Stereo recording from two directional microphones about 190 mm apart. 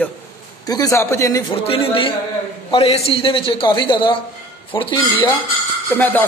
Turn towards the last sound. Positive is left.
turn(degrees=10)  # may be behind; listen again after turning